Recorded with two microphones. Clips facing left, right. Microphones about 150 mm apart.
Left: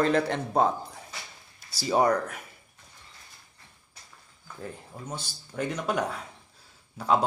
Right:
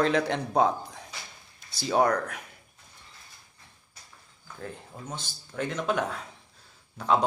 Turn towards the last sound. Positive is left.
turn(degrees=10)  # may be behind; listen again after turning